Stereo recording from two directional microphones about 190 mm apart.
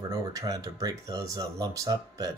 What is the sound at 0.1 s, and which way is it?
Speech, 20° right (ahead or behind).